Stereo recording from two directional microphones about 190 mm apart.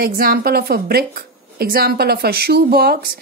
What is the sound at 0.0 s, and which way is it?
Speech, 50° right (ahead or behind).